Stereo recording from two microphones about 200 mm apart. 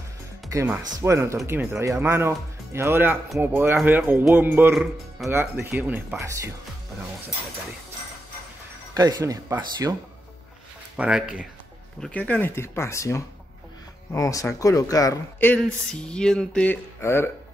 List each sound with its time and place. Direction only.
0.5 s speech: 15° right (ahead or behind)
8.9 s speech: 20° right (ahead or behind)
11.0 s speech: 5° right (ahead or behind)
12.0 s speech: 5° left (ahead or behind)